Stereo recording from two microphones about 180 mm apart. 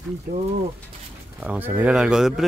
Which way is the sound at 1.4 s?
10° right (ahead or behind).